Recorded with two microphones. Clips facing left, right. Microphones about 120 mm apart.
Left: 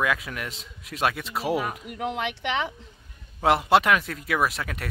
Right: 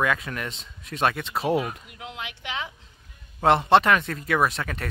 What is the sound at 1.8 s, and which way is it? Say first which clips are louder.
Speech: left 9 dB; 60° left (ahead or behind).